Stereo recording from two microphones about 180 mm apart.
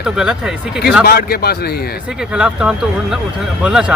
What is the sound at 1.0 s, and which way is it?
Speech, 60° left (ahead or behind).